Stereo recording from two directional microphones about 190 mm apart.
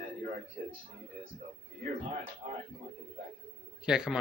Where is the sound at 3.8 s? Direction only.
5° right (ahead or behind).